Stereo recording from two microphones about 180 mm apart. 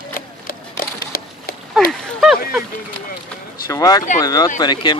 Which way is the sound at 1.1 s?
55° left (ahead or behind).